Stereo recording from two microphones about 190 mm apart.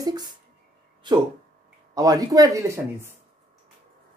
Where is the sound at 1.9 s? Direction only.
20° right (ahead or behind).